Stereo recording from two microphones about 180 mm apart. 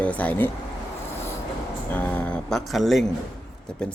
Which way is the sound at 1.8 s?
10° left (ahead or behind).